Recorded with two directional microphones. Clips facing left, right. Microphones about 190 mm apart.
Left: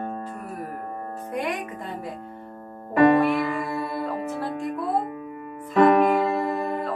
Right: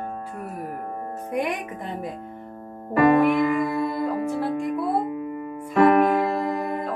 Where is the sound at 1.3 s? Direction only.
15° right (ahead or behind).